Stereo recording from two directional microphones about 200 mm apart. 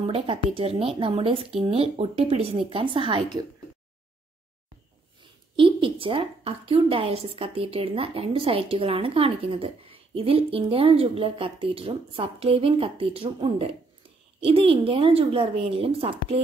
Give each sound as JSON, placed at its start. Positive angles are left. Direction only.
{"t": 0.0, "sound": "a woman's voice", "side_deg": -25}
{"t": 5.2, "sound": "a woman's voice", "side_deg": -25}